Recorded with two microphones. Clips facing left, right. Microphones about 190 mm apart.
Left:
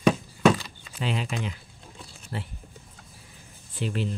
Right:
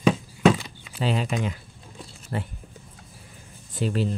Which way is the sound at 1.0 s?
40° right (ahead or behind).